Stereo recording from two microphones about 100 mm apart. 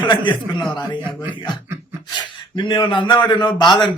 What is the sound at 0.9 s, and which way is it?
Speech, 20° right (ahead or behind).